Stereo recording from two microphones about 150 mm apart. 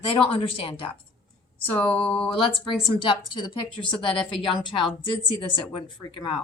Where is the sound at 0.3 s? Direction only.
40° left (ahead or behind).